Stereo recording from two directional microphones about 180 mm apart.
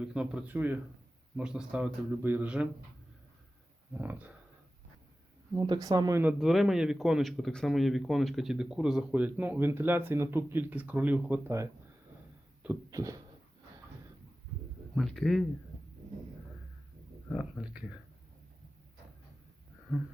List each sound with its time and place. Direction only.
0.0 s speech: 5° right (ahead or behind)
3.9 s speech: 10° right (ahead or behind)
5.5 s speech: 25° right (ahead or behind)
6.4 s speech: centre (ahead or behind)
12.6 s a sound: 20° right (ahead or behind)
14.9 s speech: centre (ahead or behind)
17.3 s speech: 5° right (ahead or behind)